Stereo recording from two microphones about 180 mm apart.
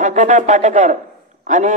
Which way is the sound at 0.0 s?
45° right (ahead or behind).